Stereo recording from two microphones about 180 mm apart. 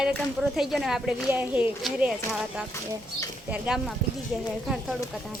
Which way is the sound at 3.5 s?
5° right (ahead or behind).